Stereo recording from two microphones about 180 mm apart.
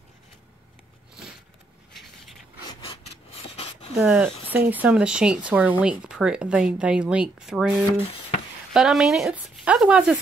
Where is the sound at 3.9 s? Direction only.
5° right (ahead or behind).